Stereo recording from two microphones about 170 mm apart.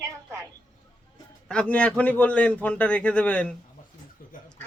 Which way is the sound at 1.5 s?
5° left (ahead or behind).